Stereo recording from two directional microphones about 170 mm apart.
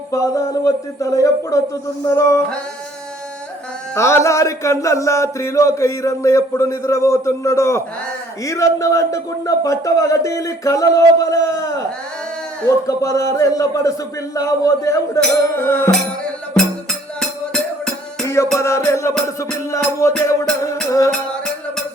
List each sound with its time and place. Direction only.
0.1 s speech: 20° left (ahead or behind)
3.9 s mantra: 15° left (ahead or behind)
8.4 s speech: 20° left (ahead or behind)
14.3 s mantra: 20° left (ahead or behind)
15.9 s music: 5° left (ahead or behind)
18.5 s mantra: 15° left (ahead or behind)